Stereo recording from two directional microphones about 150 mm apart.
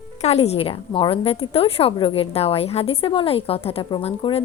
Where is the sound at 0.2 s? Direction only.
45° left (ahead or behind).